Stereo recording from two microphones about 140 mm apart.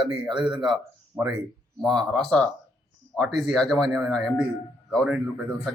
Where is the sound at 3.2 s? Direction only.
Centre (ahead or behind).